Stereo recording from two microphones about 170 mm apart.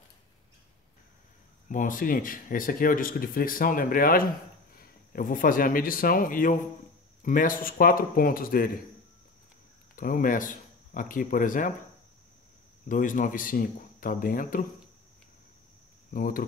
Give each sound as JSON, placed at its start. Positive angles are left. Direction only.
{"t": 1.7, "sound": "speech", "side_deg": 50}
{"t": 9.9, "sound": "speech", "side_deg": 55}
{"t": 12.8, "sound": "speech", "side_deg": 50}
{"t": 16.1, "sound": "speech", "side_deg": 55}